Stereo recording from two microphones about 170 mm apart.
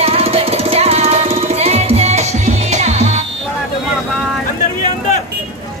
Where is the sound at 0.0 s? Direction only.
35° right (ahead or behind).